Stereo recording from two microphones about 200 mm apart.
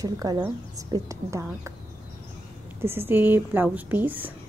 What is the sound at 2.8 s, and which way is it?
A woman's voice, 10° right (ahead or behind).